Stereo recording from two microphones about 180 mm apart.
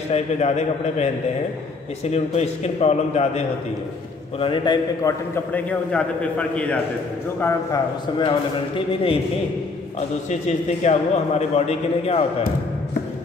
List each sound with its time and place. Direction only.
0.1 s a man's voice: 35° left (ahead or behind)
2.0 s a man's voice: 35° left (ahead or behind)
4.4 s a man's voice: 25° left (ahead or behind)
5.3 s a man's voice: 10° left (ahead or behind)
8.2 s a man's voice: 30° left (ahead or behind)
10.4 s a man's voice: 40° left (ahead or behind)